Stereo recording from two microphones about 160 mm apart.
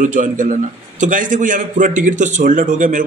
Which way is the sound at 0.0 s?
55° right (ahead or behind).